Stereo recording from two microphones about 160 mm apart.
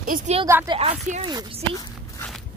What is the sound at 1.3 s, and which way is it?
Speech, 25° right (ahead or behind).